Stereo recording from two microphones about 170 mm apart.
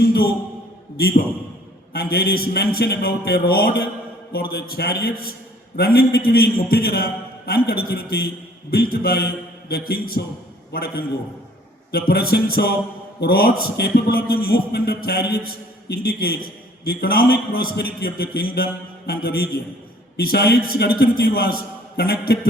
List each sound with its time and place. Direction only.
0.9 s a man's voice: 65° left (ahead or behind)